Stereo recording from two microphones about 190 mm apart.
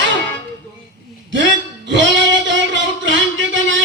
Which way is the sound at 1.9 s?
70° right (ahead or behind).